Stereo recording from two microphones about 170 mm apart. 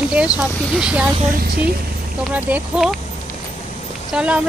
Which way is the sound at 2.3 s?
10° right (ahead or behind).